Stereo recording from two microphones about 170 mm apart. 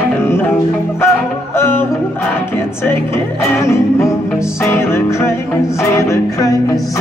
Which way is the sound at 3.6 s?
15° left (ahead or behind).